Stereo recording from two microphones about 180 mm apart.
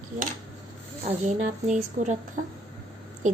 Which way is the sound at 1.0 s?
40° right (ahead or behind).